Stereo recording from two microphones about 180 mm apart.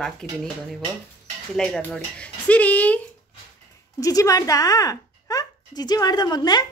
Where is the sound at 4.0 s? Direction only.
20° left (ahead or behind).